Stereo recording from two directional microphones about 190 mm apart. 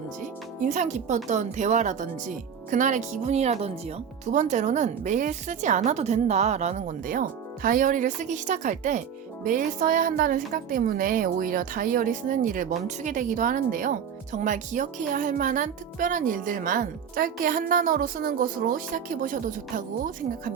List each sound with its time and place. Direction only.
0.6 s speech: 40° right (ahead or behind)